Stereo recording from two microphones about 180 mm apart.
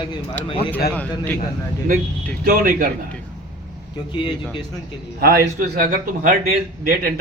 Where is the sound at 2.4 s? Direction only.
55° right (ahead or behind).